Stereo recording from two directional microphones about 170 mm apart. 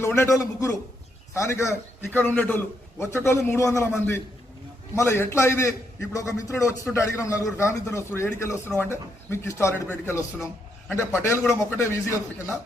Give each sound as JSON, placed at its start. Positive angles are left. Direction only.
{"t": 0.0, "sound": "a man's voice", "side_deg": 15}
{"t": 10.8, "sound": "a man's voice", "side_deg": 15}